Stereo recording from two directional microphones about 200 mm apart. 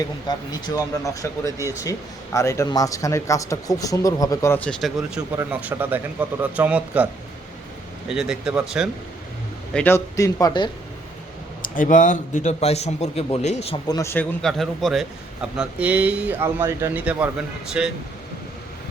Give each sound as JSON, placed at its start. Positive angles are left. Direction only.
{"t": 0.3, "sound": "a man's voice", "side_deg": 20}
{"t": 8.1, "sound": "speech", "side_deg": -5}
{"t": 9.7, "sound": "speech", "side_deg": 10}
{"t": 11.6, "sound": "a man's voice", "side_deg": 40}
{"t": 13.8, "sound": "speech", "side_deg": 15}
{"t": 14.4, "sound": "a man's voice", "side_deg": 0}